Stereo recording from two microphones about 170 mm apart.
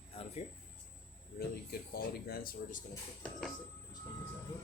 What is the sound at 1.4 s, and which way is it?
Speech, 65° left (ahead or behind).